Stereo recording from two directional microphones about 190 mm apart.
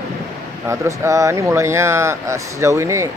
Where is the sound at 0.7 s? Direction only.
15° right (ahead or behind).